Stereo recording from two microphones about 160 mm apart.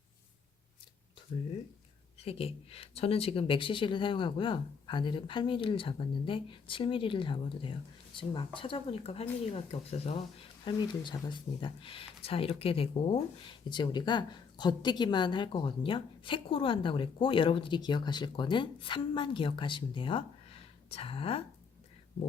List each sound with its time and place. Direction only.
2.1 s speech: 40° left (ahead or behind)